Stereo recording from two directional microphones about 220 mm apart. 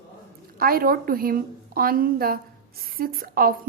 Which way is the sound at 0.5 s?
40° right (ahead or behind).